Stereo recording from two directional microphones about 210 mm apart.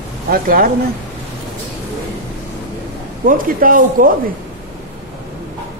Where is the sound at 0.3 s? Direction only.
45° right (ahead or behind).